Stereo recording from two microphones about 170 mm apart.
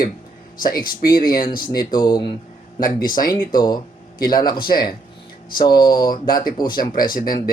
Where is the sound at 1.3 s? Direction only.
60° left (ahead or behind).